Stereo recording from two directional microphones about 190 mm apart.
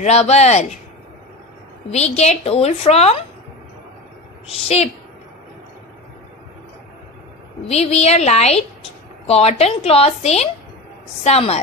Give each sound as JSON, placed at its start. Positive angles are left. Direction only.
{"t": 0.0, "sound": "a woman's voice", "side_deg": 35}
{"t": 1.9, "sound": "a woman's voice", "side_deg": 35}
{"t": 4.5, "sound": "a woman's voice", "side_deg": 35}
{"t": 7.6, "sound": "a woman's voice", "side_deg": 35}